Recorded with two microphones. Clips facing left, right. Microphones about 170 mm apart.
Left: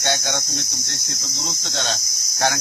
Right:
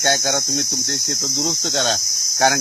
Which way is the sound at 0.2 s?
55° right (ahead or behind).